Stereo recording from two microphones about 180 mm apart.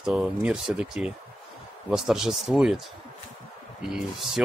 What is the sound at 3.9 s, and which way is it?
Speech, centre (ahead or behind).